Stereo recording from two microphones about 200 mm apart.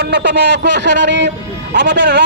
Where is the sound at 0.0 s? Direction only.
60° right (ahead or behind).